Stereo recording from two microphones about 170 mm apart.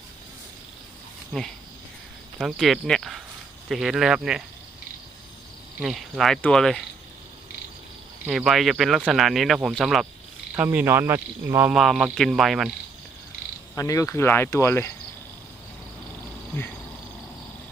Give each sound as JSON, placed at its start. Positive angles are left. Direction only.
{"t": 1.3, "sound": "speech", "side_deg": 0}
{"t": 5.8, "sound": "speech", "side_deg": 0}
{"t": 8.3, "sound": "speech", "side_deg": 0}
{"t": 13.7, "sound": "speech", "side_deg": 20}